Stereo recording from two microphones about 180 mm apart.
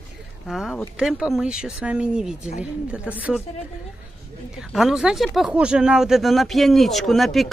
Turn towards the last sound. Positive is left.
turn(degrees=0)  # may be behind; listen again after turning